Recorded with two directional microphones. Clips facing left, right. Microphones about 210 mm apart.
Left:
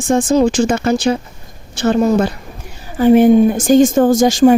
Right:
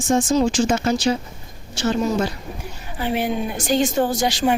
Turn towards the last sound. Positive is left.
turn(degrees=45)  # may be behind; listen again after turning